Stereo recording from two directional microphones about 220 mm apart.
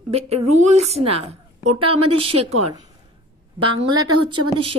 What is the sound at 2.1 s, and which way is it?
Speech, 25° right (ahead or behind).